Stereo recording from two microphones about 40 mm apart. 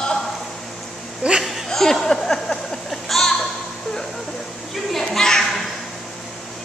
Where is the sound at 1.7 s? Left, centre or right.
Centre.